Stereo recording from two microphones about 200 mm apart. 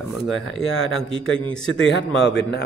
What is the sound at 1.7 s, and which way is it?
Speech, 65° left (ahead or behind).